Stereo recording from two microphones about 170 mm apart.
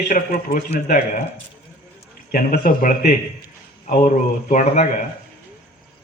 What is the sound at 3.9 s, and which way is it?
A man's voice, 45° left (ahead or behind).